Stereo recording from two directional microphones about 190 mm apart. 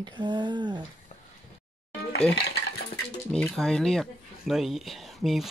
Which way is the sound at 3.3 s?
Centre (ahead or behind).